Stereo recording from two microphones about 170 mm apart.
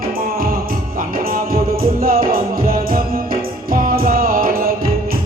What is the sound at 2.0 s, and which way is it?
Music, 60° right (ahead or behind).